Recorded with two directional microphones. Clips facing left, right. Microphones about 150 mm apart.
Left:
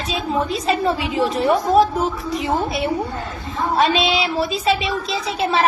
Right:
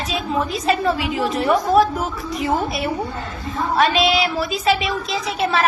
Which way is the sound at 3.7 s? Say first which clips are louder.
Right 1 dB; 30° left (ahead or behind).